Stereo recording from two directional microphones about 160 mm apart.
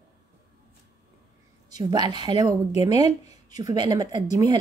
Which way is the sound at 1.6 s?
25° right (ahead or behind).